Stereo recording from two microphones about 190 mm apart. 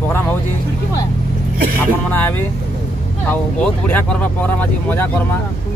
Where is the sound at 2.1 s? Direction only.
10° left (ahead or behind).